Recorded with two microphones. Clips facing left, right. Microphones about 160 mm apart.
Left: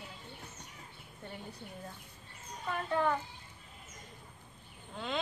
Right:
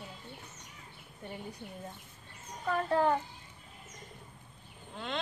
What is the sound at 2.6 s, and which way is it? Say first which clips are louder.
Speech: right 4 dB; 40° right (ahead or behind).